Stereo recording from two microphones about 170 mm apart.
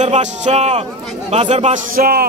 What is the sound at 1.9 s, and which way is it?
Speech, 60° right (ahead or behind).